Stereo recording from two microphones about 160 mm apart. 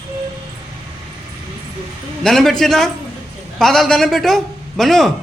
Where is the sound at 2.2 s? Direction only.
Centre (ahead or behind).